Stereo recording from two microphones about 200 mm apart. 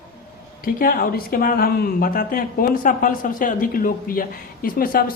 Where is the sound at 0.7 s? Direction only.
45° left (ahead or behind).